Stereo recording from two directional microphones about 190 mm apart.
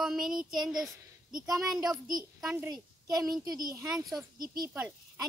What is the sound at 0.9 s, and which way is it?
Speech, 20° right (ahead or behind).